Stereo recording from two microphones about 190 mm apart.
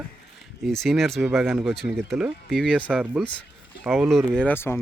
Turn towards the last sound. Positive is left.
turn(degrees=10)  # may be behind; listen again after turning